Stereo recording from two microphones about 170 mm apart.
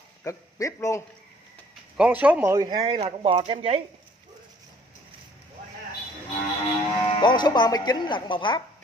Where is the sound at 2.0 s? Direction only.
5° right (ahead or behind).